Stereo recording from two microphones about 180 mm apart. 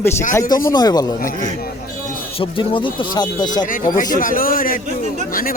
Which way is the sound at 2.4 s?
30° left (ahead or behind).